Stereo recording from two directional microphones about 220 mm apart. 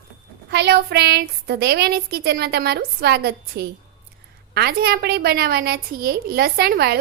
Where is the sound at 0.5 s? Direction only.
50° right (ahead or behind).